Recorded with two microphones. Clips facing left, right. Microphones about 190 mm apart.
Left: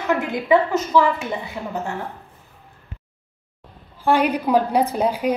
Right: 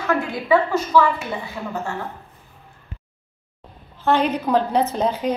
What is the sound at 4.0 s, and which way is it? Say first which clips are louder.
A woman's voice: left 1 dB; 10° left (ahead or behind).